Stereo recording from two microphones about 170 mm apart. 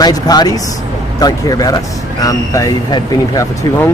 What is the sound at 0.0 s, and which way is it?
Speech, 25° left (ahead or behind).